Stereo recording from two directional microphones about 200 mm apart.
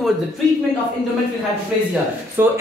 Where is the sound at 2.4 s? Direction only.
10° right (ahead or behind).